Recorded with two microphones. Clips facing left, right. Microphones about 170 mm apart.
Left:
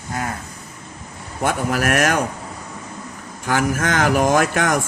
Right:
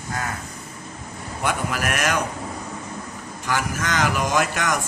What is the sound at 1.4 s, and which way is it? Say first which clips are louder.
Speech: left 5 dB; 45° left (ahead or behind).